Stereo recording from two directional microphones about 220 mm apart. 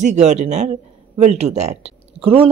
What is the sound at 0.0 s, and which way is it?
Speech, 30° right (ahead or behind).